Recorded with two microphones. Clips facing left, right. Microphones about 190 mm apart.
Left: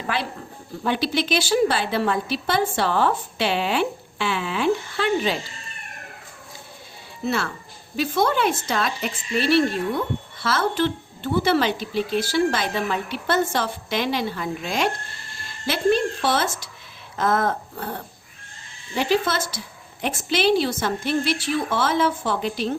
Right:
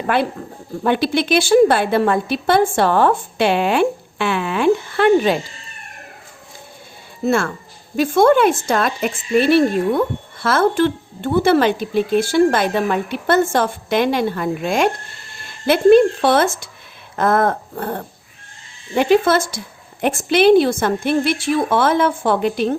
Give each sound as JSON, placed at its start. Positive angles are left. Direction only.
{"t": 0.9, "sound": "speech", "side_deg": -55}
{"t": 7.3, "sound": "a woman's voice", "side_deg": -50}